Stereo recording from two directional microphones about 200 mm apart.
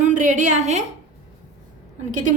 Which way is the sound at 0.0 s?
40° right (ahead or behind).